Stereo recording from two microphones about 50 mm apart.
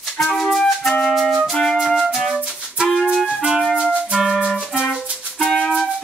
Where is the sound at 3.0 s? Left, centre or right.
Centre.